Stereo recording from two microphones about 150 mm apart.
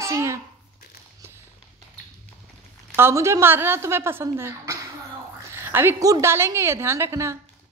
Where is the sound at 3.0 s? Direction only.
15° right (ahead or behind).